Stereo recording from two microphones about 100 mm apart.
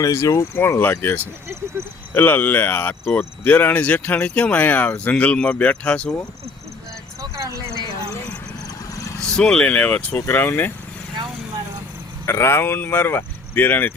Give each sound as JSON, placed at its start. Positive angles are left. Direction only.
{"t": 0.0, "sound": "speech", "side_deg": 35}
{"t": 1.8, "sound": "speech", "side_deg": -25}
{"t": 2.1, "sound": "speech", "side_deg": 20}
{"t": 7.2, "sound": "vehicle", "side_deg": -30}
{"t": 8.6, "sound": "a sound", "side_deg": 35}
{"t": 9.3, "sound": "speech", "side_deg": 5}
{"t": 12.2, "sound": "speech", "side_deg": 25}